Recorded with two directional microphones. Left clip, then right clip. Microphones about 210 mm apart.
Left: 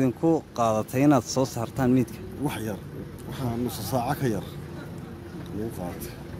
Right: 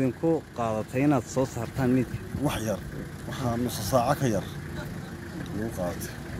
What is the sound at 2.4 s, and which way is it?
Speech, 5° right (ahead or behind).